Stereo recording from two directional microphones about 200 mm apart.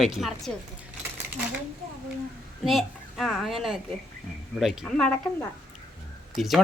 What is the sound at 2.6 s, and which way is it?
A woman's voice, centre (ahead or behind).